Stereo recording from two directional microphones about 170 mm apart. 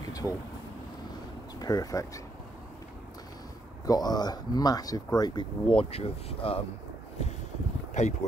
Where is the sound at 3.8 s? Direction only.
25° left (ahead or behind).